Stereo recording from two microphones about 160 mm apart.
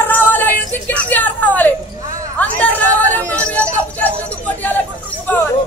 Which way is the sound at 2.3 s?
10° left (ahead or behind).